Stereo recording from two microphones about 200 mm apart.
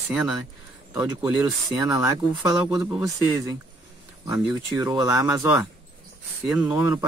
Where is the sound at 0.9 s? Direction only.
15° right (ahead or behind).